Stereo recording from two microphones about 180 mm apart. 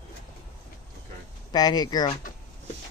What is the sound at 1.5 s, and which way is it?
Speech, 20° left (ahead or behind).